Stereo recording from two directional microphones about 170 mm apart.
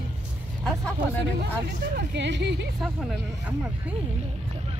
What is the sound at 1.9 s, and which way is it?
Speech, 90° right.